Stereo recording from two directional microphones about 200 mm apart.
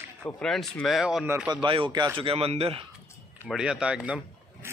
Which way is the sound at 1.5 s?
25° right (ahead or behind).